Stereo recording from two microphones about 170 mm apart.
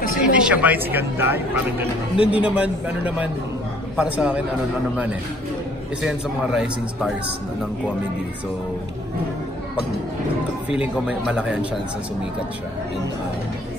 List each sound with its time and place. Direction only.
0.3 s a woman's voice: 5° right (ahead or behind)
6.0 s a man's voice: 5° right (ahead or behind)
10.7 s a woman's voice: 5° right (ahead or behind)